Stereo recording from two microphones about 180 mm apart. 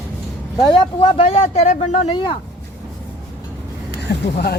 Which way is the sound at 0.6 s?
25° left (ahead or behind).